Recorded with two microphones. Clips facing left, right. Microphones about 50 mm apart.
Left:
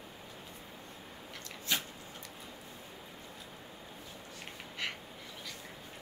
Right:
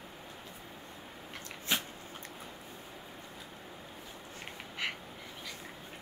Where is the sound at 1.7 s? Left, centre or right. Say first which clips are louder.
Right 1 dB; right.